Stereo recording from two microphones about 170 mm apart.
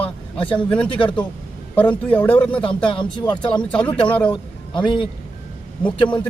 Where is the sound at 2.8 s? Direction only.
25° left (ahead or behind).